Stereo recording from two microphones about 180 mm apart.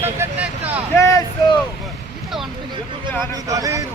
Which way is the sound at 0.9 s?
15° left (ahead or behind).